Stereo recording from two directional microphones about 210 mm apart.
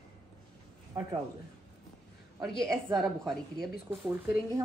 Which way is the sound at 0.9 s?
15° right (ahead or behind).